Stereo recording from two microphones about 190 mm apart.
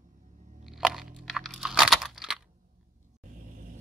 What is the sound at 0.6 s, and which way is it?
Crunch, centre (ahead or behind).